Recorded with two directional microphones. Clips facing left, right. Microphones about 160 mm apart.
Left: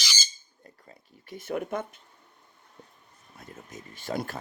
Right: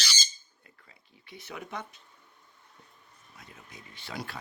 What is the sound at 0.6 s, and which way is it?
Speech, 45° left (ahead or behind).